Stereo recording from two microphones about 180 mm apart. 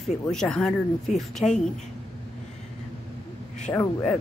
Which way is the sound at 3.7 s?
15° left (ahead or behind).